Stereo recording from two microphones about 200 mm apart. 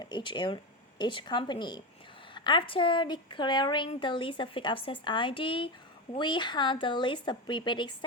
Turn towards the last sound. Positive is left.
turn(degrees=25)  # may be behind; listen again after turning